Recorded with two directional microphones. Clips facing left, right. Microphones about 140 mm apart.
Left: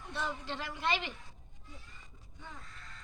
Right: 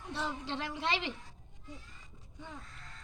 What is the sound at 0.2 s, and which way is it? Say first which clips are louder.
Speech: right 1 dB; 25° right (ahead or behind).